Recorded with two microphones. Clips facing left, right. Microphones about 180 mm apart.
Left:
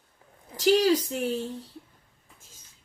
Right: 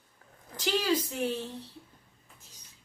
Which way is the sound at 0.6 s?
40° left (ahead or behind).